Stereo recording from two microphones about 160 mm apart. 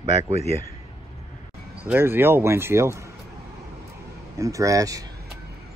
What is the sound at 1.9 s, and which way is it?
Speech, 15° right (ahead or behind).